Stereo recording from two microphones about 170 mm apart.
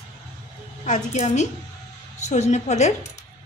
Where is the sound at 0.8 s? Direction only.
45° left (ahead or behind).